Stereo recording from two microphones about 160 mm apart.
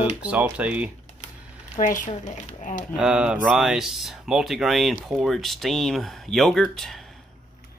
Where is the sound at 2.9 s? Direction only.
5° right (ahead or behind).